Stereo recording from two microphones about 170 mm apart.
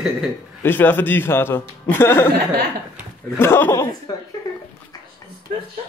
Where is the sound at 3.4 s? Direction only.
15° left (ahead or behind).